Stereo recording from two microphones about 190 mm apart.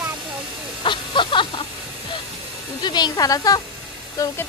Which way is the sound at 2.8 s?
20° left (ahead or behind).